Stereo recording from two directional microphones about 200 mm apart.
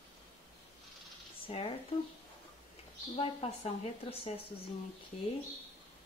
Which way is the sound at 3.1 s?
30° left (ahead or behind).